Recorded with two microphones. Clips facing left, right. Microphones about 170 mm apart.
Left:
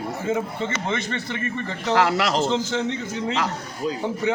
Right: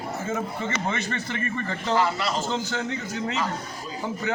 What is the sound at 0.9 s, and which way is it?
Speech, 20° left (ahead or behind).